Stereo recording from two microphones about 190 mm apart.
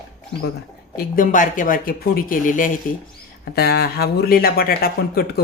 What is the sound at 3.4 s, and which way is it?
Speech, 55° left (ahead or behind).